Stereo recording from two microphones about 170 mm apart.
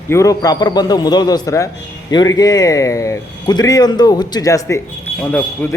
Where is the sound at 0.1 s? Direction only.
20° left (ahead or behind).